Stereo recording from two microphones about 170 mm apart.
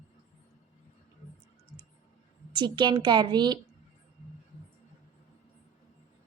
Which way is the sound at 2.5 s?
25° right (ahead or behind).